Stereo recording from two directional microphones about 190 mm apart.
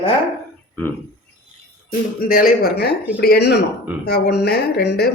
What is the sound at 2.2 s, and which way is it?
Speech, 45° left (ahead or behind).